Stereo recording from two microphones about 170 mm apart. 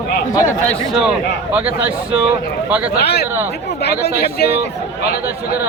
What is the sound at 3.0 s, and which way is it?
Speech, 70° left (ahead or behind).